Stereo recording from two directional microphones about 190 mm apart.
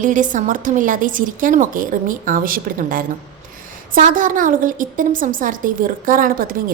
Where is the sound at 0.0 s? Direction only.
40° right (ahead or behind).